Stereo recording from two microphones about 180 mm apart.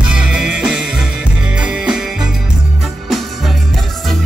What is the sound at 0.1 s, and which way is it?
Music, 5° right (ahead or behind).